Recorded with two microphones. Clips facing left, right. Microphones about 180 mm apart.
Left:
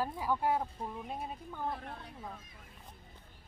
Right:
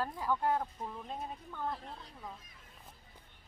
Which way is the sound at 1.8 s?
60° left (ahead or behind).